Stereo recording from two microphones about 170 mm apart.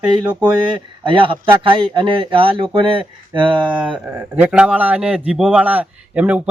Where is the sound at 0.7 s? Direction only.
30° right (ahead or behind).